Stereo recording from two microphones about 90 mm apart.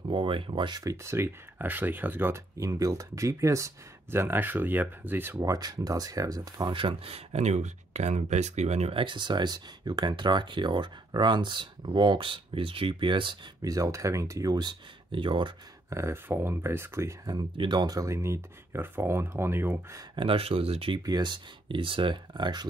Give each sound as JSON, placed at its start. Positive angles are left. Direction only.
{"t": 0.1, "sound": "speech", "side_deg": -70}
{"t": 0.8, "sound": "speech", "side_deg": -30}
{"t": 2.5, "sound": "speech", "side_deg": -35}
{"t": 5.4, "sound": "speech", "side_deg": -40}
{"t": 6.7, "sound": "speech", "side_deg": -80}
{"t": 8.9, "sound": "speech", "side_deg": -65}
{"t": 13.6, "sound": "speech", "side_deg": -40}
{"t": 15.9, "sound": "speech", "side_deg": -30}
{"t": 17.6, "sound": "speech", "side_deg": -55}
{"t": 20.2, "sound": "speech", "side_deg": -90}
{"t": 21.0, "sound": "speech", "side_deg": -50}